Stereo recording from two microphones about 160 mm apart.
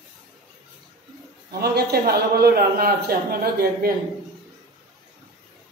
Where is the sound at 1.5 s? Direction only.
80° right.